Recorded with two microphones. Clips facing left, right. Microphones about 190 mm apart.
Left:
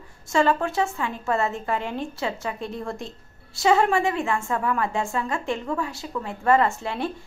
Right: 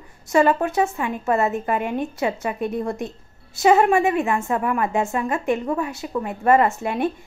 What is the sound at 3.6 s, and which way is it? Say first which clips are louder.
A woman's voice: right 4 dB; 20° right (ahead or behind).